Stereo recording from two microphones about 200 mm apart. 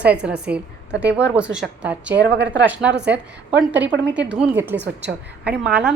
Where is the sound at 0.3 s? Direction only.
5° right (ahead or behind).